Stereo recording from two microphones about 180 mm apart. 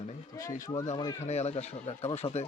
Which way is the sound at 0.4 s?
50° left (ahead or behind).